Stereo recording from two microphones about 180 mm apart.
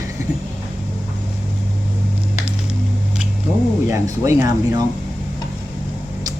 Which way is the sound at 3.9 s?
20° right (ahead or behind).